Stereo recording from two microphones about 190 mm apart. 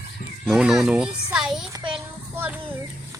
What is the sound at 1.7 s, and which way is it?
Child singing, 25° right (ahead or behind).